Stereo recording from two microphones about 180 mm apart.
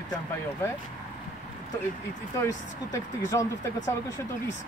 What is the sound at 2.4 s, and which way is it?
Speech, 15° left (ahead or behind).